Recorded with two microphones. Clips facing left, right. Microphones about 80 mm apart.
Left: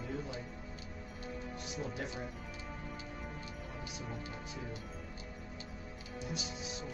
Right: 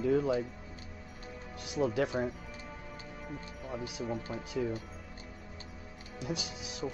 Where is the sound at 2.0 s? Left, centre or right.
Right.